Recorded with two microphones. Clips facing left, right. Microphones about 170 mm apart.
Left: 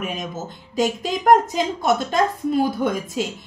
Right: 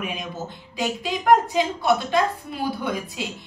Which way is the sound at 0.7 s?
45° left (ahead or behind).